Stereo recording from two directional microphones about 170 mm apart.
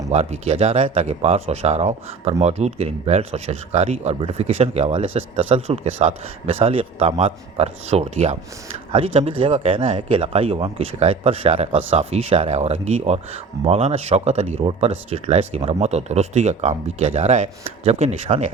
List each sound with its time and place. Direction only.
0.1 s speech: 40° right (ahead or behind)